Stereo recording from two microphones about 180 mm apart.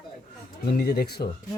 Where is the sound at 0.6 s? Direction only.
60° left (ahead or behind).